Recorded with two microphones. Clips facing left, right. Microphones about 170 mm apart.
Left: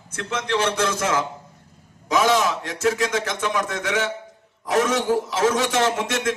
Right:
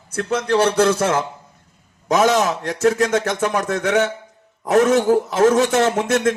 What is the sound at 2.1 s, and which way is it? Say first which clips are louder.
A man's voice: right 3 dB; 50° right (ahead or behind).